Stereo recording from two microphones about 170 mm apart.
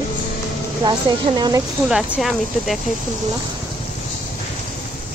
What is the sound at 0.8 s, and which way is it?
Speech, 25° right (ahead or behind).